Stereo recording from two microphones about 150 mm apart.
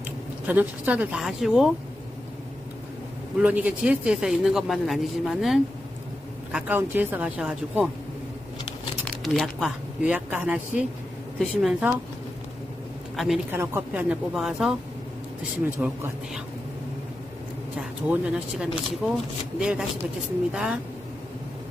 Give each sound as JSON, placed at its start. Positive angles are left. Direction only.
{"t": 0.5, "sound": "speech", "side_deg": -10}
{"t": 3.3, "sound": "speech", "side_deg": -10}
{"t": 9.2, "sound": "speech", "side_deg": 0}
{"t": 13.1, "sound": "a man's voice", "side_deg": 0}
{"t": 13.5, "sound": "speech", "side_deg": -15}
{"t": 15.8, "sound": "speech", "side_deg": -10}
{"t": 17.7, "sound": "speech", "side_deg": -5}
{"t": 20.5, "sound": "speech", "side_deg": -5}